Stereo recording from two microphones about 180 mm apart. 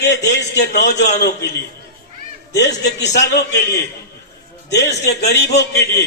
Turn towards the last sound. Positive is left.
turn(degrees=70)  # may be behind; listen again after turning